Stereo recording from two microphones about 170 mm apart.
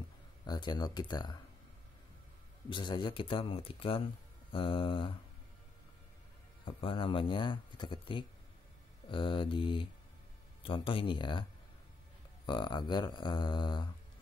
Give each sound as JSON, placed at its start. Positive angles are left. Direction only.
{"t": 0.5, "sound": "speech", "side_deg": 25}
{"t": 2.7, "sound": "speech", "side_deg": 30}
{"t": 6.6, "sound": "speech", "side_deg": 30}
{"t": 12.4, "sound": "speech", "side_deg": 30}